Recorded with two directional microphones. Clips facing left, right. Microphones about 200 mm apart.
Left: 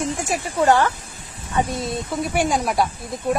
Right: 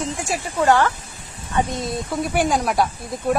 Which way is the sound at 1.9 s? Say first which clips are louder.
Right 1 dB; centre (ahead or behind).